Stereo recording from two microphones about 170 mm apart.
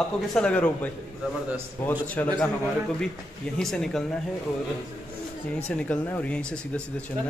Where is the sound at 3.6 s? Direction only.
5° left (ahead or behind).